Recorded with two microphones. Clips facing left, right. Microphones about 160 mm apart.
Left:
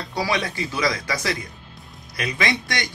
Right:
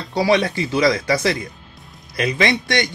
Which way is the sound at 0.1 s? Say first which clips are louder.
Right 8 dB; 25° right (ahead or behind).